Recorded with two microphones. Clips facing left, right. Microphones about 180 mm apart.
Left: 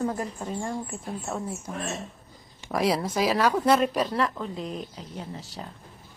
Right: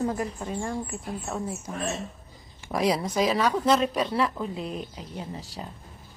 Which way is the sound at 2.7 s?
Centre (ahead or behind).